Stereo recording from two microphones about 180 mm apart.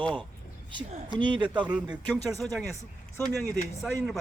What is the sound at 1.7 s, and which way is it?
Speech, 5° right (ahead or behind).